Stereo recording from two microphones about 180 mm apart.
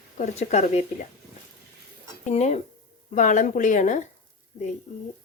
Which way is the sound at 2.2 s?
40° left (ahead or behind).